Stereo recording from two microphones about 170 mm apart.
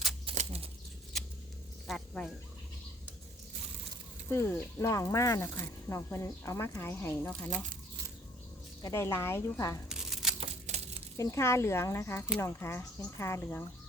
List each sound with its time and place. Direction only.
0.3 s bird flight: 40° right (ahead or behind)
1.9 s speech: centre (ahead or behind)
4.3 s speech: 15° left (ahead or behind)
8.8 s speech: 15° left (ahead or behind)
9.9 s crumpling: centre (ahead or behind)
10.4 s a sound: 35° right (ahead or behind)
11.2 s speech: 15° left (ahead or behind)